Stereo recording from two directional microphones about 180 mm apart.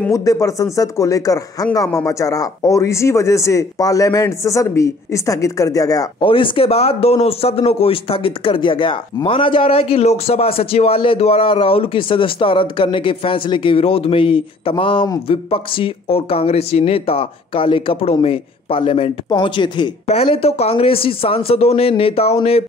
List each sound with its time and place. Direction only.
0.1 s speech: 20° left (ahead or behind); by 22.7 s 35° left (ahead or behind)